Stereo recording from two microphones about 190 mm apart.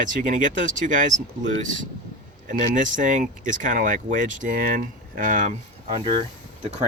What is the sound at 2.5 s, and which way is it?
Speech, 40° right (ahead or behind).